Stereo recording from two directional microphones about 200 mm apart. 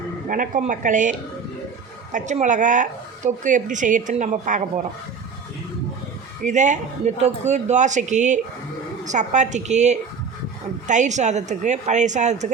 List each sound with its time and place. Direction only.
0.3 s speech: 40° right (ahead or behind)
2.1 s speech: 35° right (ahead or behind)
6.4 s speech: 35° right (ahead or behind)